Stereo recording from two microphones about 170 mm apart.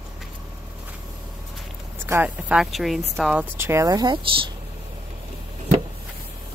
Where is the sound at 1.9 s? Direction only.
15° right (ahead or behind).